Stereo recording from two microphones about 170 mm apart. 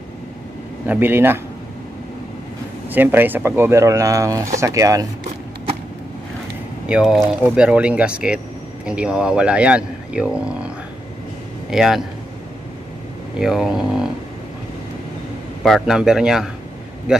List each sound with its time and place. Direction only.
0.8 s a man's voice: 10° right (ahead or behind)
2.9 s a man's voice: 10° right (ahead or behind)
6.9 s a man's voice: 5° right (ahead or behind)
11.7 s a man's voice: centre (ahead or behind)
13.4 s a man's voice: centre (ahead or behind)
15.6 s a man's voice: centre (ahead or behind)